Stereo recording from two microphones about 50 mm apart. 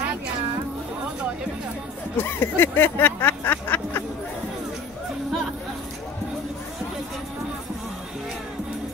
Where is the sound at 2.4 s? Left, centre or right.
Left.